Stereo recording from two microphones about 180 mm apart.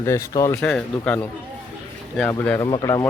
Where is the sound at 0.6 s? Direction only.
5° left (ahead or behind).